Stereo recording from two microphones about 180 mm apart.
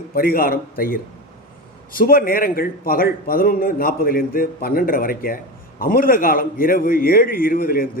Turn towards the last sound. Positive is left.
turn(degrees=55)  # may be behind; listen again after turning